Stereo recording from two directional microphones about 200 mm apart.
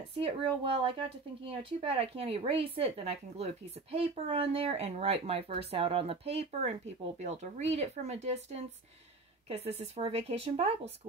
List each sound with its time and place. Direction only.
0.1 s speech: 30° right (ahead or behind)